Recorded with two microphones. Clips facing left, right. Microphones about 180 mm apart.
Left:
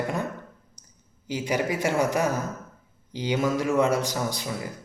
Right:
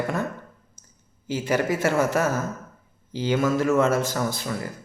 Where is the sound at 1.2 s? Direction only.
15° left (ahead or behind).